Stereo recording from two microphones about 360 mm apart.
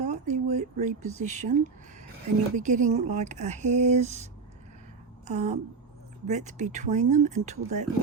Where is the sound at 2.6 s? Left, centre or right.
Right.